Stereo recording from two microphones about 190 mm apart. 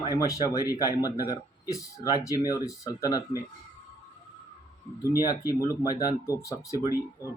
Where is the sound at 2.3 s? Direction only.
15° left (ahead or behind).